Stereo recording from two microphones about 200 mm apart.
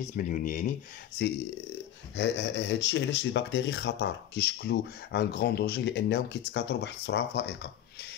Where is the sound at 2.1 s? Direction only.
60° left (ahead or behind).